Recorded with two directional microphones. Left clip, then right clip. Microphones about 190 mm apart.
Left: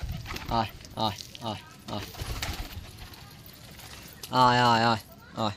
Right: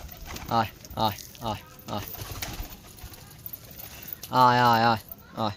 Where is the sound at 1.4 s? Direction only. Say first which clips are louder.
Right 3 dB; 15° right (ahead or behind).